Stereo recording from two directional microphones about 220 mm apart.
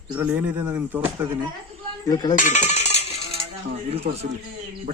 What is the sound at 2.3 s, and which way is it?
Coin, 35° left (ahead or behind).